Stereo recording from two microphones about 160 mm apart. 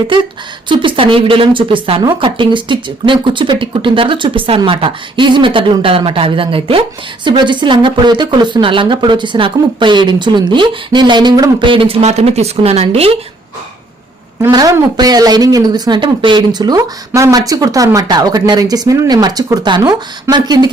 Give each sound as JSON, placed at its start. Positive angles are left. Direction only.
{"t": 0.7, "sound": "a woman's voice", "side_deg": -30}
{"t": 14.5, "sound": "a woman's voice", "side_deg": -25}